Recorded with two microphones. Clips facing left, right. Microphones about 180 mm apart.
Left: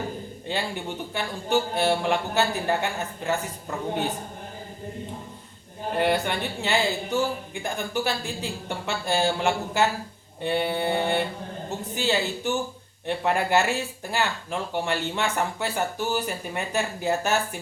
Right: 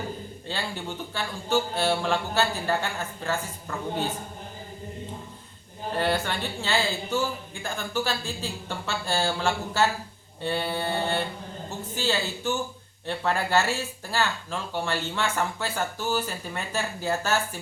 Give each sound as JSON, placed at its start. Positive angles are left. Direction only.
{"t": 0.4, "sound": "speech", "side_deg": 15}
{"t": 6.0, "sound": "speech", "side_deg": 15}